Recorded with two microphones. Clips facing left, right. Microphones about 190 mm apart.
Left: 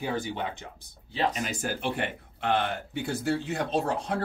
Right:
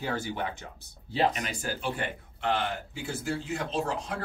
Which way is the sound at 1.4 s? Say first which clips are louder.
Left 4 dB; 45° left (ahead or behind).